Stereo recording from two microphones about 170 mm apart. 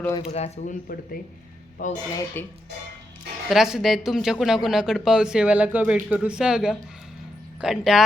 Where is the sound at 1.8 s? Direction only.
50° left (ahead or behind).